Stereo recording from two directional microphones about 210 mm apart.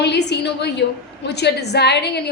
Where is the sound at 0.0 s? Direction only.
55° left (ahead or behind).